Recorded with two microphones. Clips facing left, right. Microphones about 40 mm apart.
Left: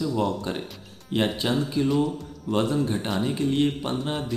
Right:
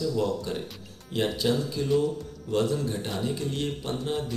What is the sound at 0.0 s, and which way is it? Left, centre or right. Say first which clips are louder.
Speech: left 2 dB; left.